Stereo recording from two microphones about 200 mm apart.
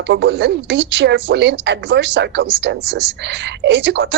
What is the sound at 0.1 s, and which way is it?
Speech, 60° right (ahead or behind).